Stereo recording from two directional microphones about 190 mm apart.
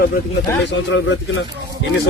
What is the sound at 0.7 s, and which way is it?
Speech, 70° left (ahead or behind).